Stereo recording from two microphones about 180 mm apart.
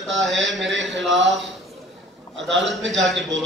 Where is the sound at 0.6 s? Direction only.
90° right.